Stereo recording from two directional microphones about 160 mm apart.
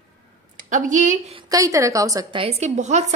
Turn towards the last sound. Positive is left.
turn(degrees=-45)  # may be behind; listen again after turning